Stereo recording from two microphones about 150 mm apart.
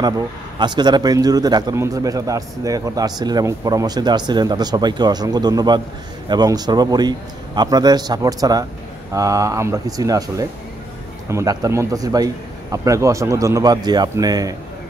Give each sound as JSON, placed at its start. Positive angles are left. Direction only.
{"t": 0.6, "sound": "a man's voice", "side_deg": -30}